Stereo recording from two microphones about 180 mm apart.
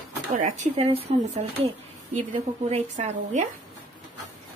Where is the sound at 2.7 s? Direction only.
40° right (ahead or behind).